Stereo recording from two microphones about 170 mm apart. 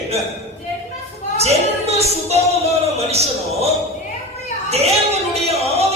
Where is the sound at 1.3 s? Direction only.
40° right (ahead or behind).